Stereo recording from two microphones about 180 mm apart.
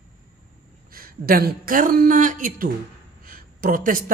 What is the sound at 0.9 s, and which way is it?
A woman's voice, 55° right (ahead or behind).